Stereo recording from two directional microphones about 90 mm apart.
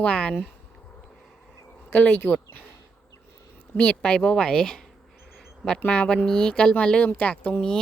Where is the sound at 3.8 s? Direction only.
10° left (ahead or behind).